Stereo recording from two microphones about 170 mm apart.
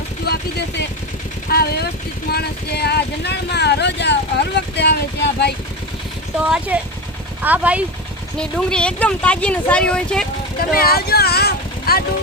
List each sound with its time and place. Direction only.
1.5 s speech: 70° left (ahead or behind)
6.7 s speech: 10° right (ahead or behind)
8.4 s speech: 5° left (ahead or behind)
10.6 s speech: 60° left (ahead or behind)